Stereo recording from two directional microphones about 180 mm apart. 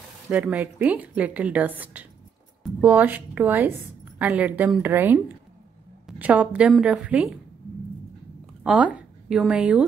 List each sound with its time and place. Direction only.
0.3 s a woman's voice: 10° right (ahead or behind)
8.6 s speech: 5° right (ahead or behind)